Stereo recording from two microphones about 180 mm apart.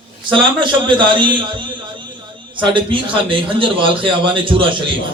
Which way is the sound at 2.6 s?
25° right (ahead or behind).